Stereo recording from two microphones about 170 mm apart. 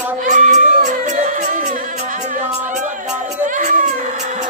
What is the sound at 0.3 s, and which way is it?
Music, 50° right (ahead or behind).